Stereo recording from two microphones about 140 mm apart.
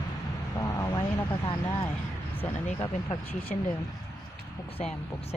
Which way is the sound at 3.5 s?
60° left (ahead or behind).